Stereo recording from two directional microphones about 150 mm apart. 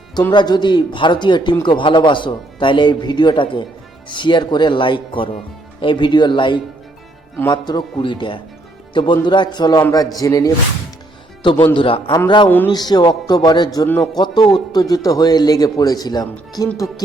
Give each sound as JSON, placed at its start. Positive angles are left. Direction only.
{"t": 0.1, "sound": "a man's voice", "side_deg": 30}